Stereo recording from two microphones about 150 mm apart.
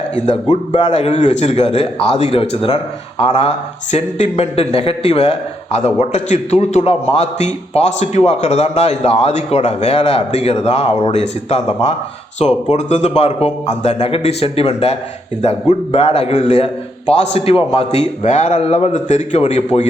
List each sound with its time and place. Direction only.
0.5 s a man's voice: 50° left (ahead or behind)